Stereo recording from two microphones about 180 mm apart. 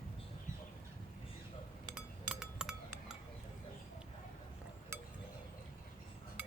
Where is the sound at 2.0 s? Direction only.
5° right (ahead or behind).